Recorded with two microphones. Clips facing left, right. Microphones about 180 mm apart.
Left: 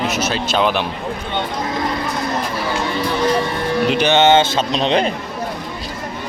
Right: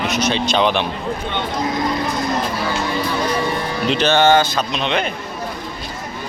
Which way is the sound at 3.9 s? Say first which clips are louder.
Even; 15° left (ahead or behind).